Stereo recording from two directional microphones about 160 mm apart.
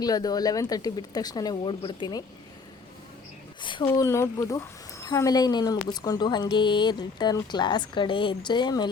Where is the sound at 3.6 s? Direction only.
30° left (ahead or behind).